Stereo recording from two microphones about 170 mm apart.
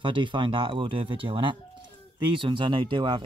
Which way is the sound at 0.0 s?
30° right (ahead or behind).